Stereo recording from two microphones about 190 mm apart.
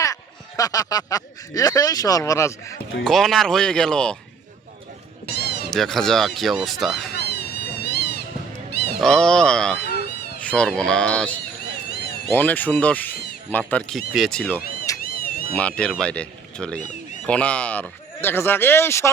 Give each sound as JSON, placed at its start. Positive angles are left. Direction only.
{"t": 0.0, "sound": "speech", "side_deg": 20}
{"t": 3.0, "sound": "speech", "side_deg": 0}
{"t": 5.3, "sound": "cat", "side_deg": 60}
{"t": 5.7, "sound": "speech", "side_deg": 0}
{"t": 7.1, "sound": "cat", "side_deg": 60}
{"t": 7.9, "sound": "a sound", "side_deg": 60}
{"t": 9.0, "sound": "speech", "side_deg": 5}
{"t": 10.4, "sound": "a sound", "side_deg": 5}
{"t": 10.8, "sound": "speech", "side_deg": 5}
{"t": 14.6, "sound": "a sound", "side_deg": 50}
{"t": 15.0, "sound": "cat", "side_deg": 50}
{"t": 15.5, "sound": "speech", "side_deg": 5}